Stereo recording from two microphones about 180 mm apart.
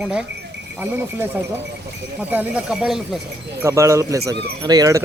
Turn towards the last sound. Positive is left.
turn(degrees=-20)  # may be behind; listen again after turning